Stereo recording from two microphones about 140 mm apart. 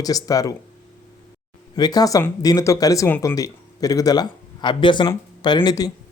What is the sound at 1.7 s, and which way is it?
Speech, 30° left (ahead or behind).